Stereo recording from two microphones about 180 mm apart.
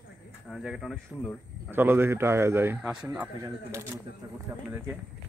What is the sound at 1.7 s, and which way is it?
Speech, 10° right (ahead or behind).